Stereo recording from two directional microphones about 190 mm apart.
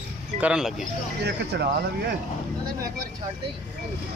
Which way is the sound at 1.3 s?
60° right (ahead or behind).